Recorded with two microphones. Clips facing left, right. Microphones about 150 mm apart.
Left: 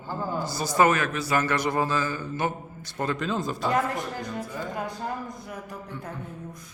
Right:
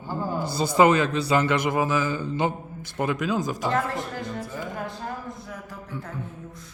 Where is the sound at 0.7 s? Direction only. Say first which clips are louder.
Right 3 dB; 20° right (ahead or behind).